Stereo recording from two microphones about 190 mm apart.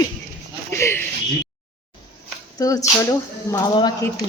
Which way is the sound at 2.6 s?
20° left (ahead or behind).